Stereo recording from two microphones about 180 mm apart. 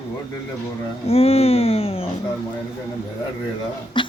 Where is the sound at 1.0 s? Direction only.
35° left (ahead or behind).